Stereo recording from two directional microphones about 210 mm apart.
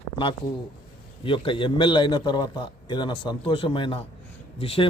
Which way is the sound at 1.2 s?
25° left (ahead or behind).